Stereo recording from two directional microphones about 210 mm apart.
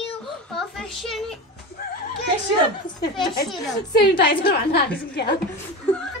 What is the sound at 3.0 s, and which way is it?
A woman's voice, 50° left (ahead or behind).